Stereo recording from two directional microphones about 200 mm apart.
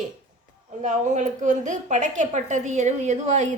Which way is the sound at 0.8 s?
35° right (ahead or behind).